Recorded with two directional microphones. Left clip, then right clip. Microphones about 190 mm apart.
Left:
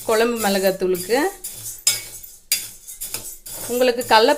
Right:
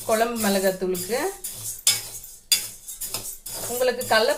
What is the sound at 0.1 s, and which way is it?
Speech, 45° left (ahead or behind).